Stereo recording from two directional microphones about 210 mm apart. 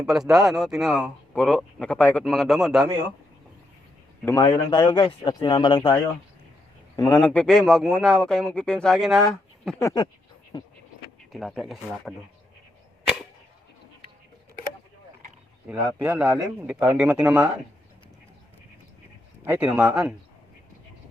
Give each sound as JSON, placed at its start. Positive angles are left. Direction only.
{"t": 0.0, "sound": "speech", "side_deg": 0}
{"t": 4.3, "sound": "speech", "side_deg": 20}
{"t": 7.1, "sound": "speech", "side_deg": 10}
{"t": 9.8, "sound": "speech", "side_deg": 20}
{"t": 11.3, "sound": "speech", "side_deg": 0}
{"t": 15.6, "sound": "speech", "side_deg": -5}
{"t": 19.5, "sound": "speech", "side_deg": -5}